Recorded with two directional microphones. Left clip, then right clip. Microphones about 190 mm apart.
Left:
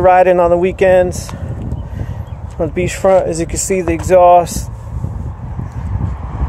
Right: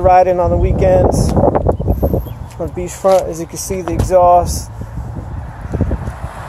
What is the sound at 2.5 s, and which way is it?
Speech, 45° left (ahead or behind).